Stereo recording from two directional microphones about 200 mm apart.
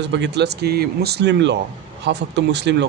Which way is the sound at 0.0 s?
60° right (ahead or behind).